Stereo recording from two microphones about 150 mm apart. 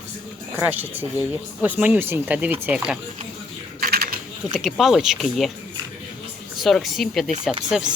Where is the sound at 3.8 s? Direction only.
80° right.